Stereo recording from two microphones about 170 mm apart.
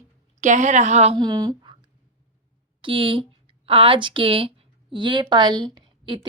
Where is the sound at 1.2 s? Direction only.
25° right (ahead or behind).